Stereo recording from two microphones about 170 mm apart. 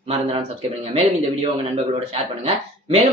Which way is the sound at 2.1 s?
35° right (ahead or behind).